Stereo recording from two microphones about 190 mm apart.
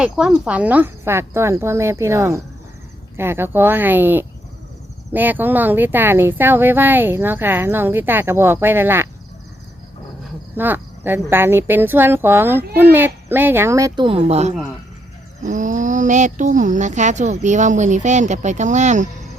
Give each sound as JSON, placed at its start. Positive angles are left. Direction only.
{"t": 0.0, "sound": "speech", "side_deg": -5}
{"t": 10.5, "sound": "speech", "side_deg": -10}